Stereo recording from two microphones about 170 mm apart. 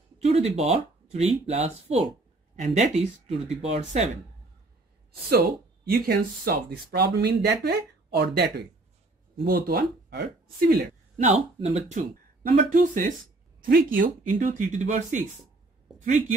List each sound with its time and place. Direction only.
0.2 s speech: 40° right (ahead or behind)
5.4 s speech: 60° right (ahead or behind)
11.2 s speech: 40° right (ahead or behind)